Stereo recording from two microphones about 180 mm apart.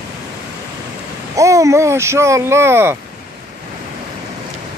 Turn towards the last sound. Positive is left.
turn(degrees=-15)  # may be behind; listen again after turning